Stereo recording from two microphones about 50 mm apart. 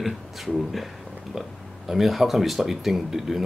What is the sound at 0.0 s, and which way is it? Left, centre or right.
Speech, centre.